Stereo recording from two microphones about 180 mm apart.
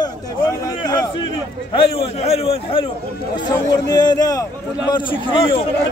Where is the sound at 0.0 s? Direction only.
20° left (ahead or behind).